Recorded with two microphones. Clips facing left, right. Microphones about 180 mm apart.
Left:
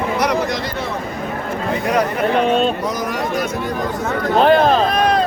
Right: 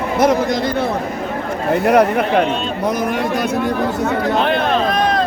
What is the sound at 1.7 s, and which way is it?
Speech, 60° right (ahead or behind).